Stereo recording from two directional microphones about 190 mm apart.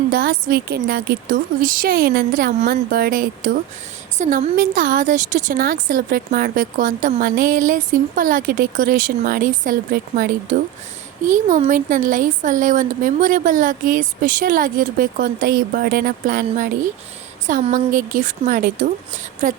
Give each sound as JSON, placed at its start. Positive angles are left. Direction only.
{"t": 0.1, "sound": "speech", "side_deg": -50}